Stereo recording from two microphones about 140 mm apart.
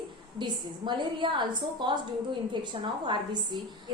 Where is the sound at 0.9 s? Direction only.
35° right (ahead or behind).